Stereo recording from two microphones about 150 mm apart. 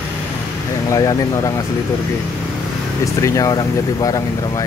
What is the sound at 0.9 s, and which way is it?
Speech, 20° left (ahead or behind).